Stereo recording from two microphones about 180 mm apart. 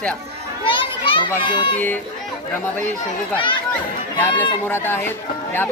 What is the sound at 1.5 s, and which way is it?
Speech, 25° left (ahead or behind).